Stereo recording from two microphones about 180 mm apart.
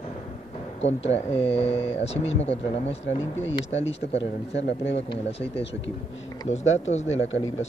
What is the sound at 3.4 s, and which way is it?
Speech, 90° left.